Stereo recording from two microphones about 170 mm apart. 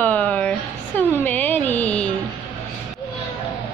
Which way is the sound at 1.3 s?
10° left (ahead or behind).